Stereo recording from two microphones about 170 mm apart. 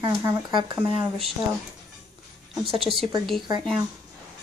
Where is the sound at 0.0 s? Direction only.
25° right (ahead or behind).